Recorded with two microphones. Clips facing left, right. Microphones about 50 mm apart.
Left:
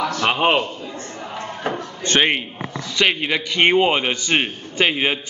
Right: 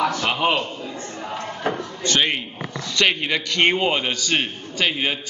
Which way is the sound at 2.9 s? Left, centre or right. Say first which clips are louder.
Left 1 dB; centre.